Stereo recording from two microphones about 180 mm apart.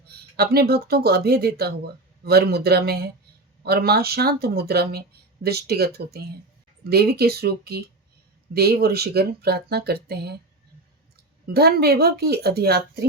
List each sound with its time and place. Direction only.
0.1 s speech: 60° right (ahead or behind)
11.4 s speech: 60° right (ahead or behind)